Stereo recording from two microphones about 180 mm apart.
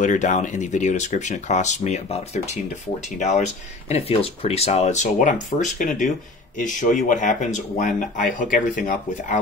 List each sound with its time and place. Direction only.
0.0 s speech: 45° left (ahead or behind)